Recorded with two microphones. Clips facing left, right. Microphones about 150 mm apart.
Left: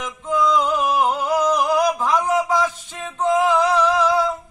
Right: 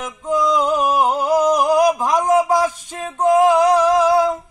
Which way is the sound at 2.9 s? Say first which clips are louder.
Right 4 dB; 40° right (ahead or behind).